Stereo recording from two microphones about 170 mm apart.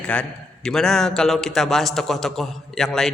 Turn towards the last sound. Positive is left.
turn(degrees=0)  # may be behind; listen again after turning